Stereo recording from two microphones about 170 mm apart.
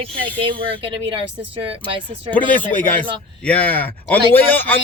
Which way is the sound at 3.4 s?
10° left (ahead or behind).